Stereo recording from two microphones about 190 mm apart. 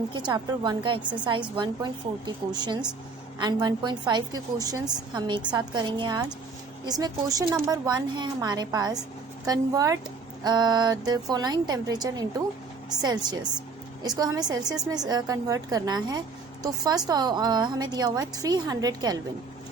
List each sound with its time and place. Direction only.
0.1 s a woman's voice: 25° right (ahead or behind)
13.3 s a woman's voice: 20° right (ahead or behind)